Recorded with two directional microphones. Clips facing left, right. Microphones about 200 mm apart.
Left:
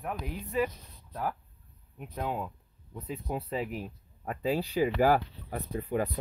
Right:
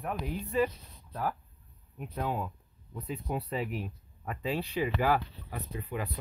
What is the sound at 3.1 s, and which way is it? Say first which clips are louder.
Speech: even; 25° left (ahead or behind).